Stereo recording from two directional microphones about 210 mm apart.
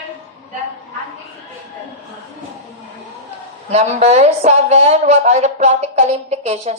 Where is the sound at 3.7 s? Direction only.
30° right (ahead or behind).